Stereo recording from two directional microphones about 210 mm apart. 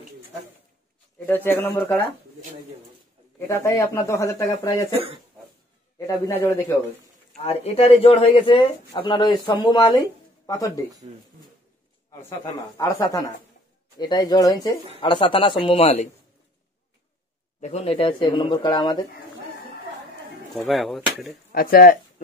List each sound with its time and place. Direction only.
1.2 s speech: 10° left (ahead or behind)
3.3 s speech: 15° left (ahead or behind)
5.9 s speech: 15° left (ahead or behind)
7.3 s speech: 30° left (ahead or behind)
12.1 s speech: 15° left (ahead or behind)
17.6 s speech: 30° left (ahead or behind)
20.6 s speech: centre (ahead or behind)
21.5 s speech: 45° left (ahead or behind)